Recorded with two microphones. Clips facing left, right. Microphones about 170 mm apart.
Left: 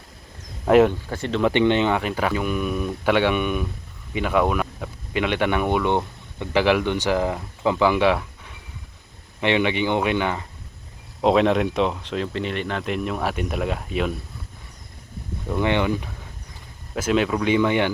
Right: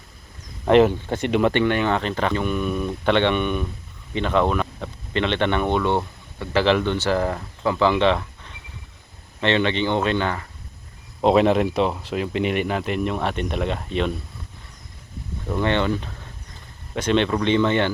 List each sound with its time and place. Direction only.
0.6 s speech: centre (ahead or behind)
1.0 s speech: 20° right (ahead or behind)
1.5 s speech: 20° left (ahead or behind)
2.0 s speech: 10° left (ahead or behind)
11.2 s speech: centre (ahead or behind)
15.5 s speech: 15° left (ahead or behind)